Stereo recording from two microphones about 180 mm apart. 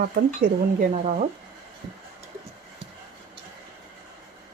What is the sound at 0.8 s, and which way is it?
Speech, 45° right (ahead or behind).